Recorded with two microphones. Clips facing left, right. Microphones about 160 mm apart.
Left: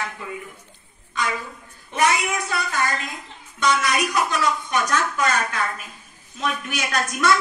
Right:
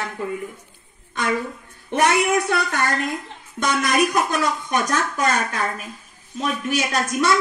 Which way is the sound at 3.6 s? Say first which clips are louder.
Right 2 dB; 50° right (ahead or behind).